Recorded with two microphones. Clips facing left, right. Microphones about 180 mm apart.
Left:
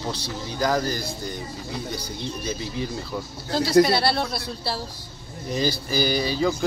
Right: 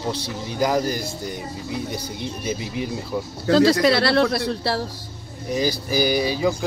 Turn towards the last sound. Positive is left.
turn(degrees=-10)  # may be behind; listen again after turning